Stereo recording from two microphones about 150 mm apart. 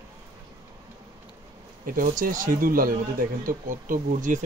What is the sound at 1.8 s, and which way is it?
Speech, 65° right (ahead or behind).